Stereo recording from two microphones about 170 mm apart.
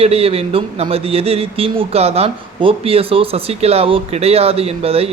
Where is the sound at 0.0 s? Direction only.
35° right (ahead or behind).